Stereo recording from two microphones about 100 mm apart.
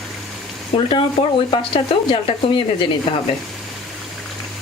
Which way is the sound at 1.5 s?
60° left (ahead or behind).